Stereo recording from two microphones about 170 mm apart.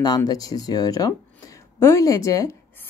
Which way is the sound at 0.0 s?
25° left (ahead or behind).